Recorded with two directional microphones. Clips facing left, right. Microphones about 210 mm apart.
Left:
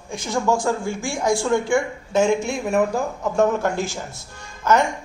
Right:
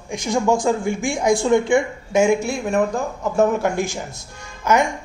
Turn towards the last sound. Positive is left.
turn(degrees=-10)  # may be behind; listen again after turning